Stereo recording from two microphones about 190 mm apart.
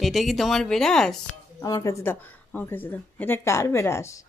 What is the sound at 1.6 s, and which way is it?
Speech, 20° left (ahead or behind).